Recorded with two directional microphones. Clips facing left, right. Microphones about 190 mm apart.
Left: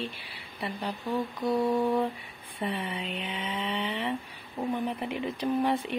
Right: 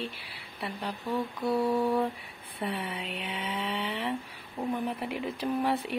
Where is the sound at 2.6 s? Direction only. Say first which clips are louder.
Left 2 dB; 10° right (ahead or behind).